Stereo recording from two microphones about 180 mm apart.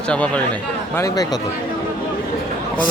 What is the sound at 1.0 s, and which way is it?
Speech, 20° left (ahead or behind).